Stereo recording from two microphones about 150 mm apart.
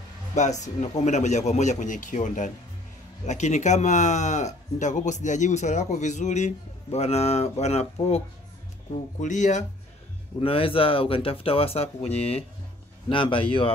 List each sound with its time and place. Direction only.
0.4 s speech: 50° left (ahead or behind)
9.2 s speech: 55° left (ahead or behind)
10.4 s speech: 40° left (ahead or behind)